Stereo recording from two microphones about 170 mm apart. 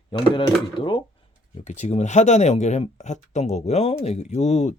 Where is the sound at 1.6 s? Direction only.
40° left (ahead or behind).